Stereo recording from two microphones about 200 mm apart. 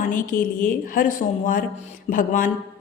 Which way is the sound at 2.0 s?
40° left (ahead or behind).